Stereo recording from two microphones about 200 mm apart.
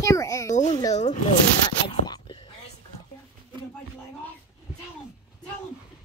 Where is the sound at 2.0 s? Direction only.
20° left (ahead or behind).